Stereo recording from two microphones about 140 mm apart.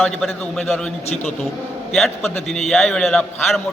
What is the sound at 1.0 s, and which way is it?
Speech, 50° left (ahead or behind).